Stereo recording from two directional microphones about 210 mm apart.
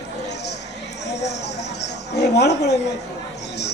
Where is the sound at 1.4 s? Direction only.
55° left (ahead or behind).